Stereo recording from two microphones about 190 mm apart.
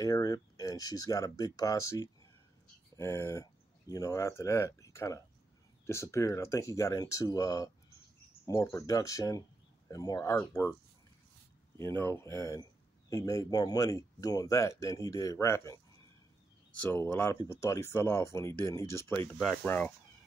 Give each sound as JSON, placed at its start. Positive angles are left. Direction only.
{"t": 0.0, "sound": "speech", "side_deg": 20}
{"t": 11.8, "sound": "speech", "side_deg": 15}
{"t": 16.8, "sound": "speech", "side_deg": 10}